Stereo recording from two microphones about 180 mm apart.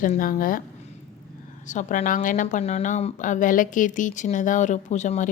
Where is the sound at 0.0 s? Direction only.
50° left (ahead or behind).